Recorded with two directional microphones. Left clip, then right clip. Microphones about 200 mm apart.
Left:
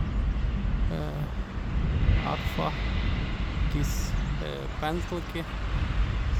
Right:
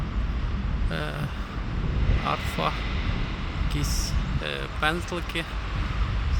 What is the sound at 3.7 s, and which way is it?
Speech, 10° left (ahead or behind).